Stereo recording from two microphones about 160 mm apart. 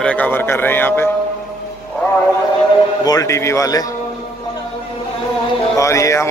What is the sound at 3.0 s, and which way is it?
Speech, 20° left (ahead or behind).